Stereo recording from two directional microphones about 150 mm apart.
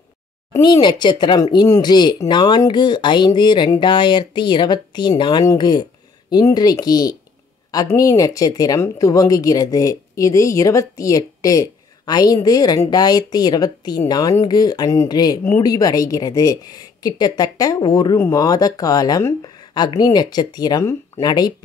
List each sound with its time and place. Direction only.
0.5 s speech: 30° left (ahead or behind)